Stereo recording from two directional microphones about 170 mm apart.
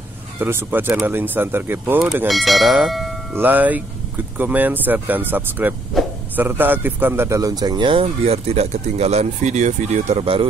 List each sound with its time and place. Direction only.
0.4 s speech: 15° right (ahead or behind)
2.2 s a man's voice: centre (ahead or behind); by 10.5 s 30° right (ahead or behind)